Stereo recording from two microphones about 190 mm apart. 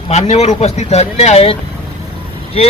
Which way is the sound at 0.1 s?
35° left (ahead or behind).